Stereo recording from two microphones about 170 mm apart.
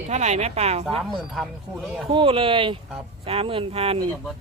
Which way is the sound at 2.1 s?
30° right (ahead or behind).